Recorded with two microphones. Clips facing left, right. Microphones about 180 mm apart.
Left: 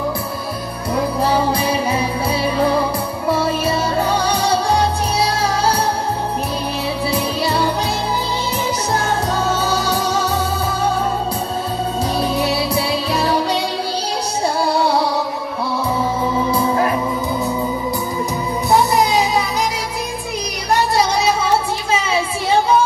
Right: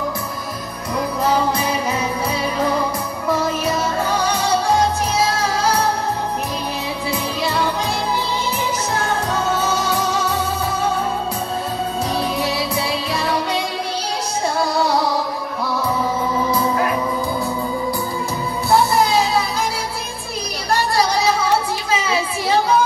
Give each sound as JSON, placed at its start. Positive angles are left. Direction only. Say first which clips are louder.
{"t": 3.3, "sound": "music", "louder": "left 2 dB", "side_deg": 30}
{"t": 7.1, "sound": "music", "louder": "left 2 dB", "side_deg": 35}
{"t": 9.6, "sound": "music", "louder": "left 1 dB", "side_deg": 35}
{"t": 12.2, "sound": "music", "louder": "left 5 dB", "side_deg": 35}
{"t": 16.5, "sound": "music", "louder": "left 2 dB", "side_deg": 30}
{"t": 18.7, "sound": "music", "louder": "left 1 dB", "side_deg": 15}
{"t": 22.1, "sound": "a sound", "louder": "left 2 dB", "side_deg": 25}